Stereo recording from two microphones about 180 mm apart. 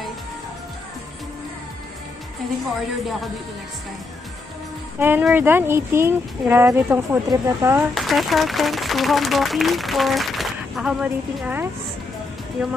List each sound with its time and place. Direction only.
4.9 s speech: 10° right (ahead or behind)
7.9 s speech: centre (ahead or behind)